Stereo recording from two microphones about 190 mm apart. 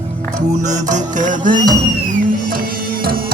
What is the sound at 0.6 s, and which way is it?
Music, 40° right (ahead or behind).